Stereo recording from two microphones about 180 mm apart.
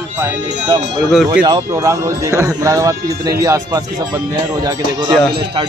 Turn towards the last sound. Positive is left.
turn(degrees=-20)  # may be behind; listen again after turning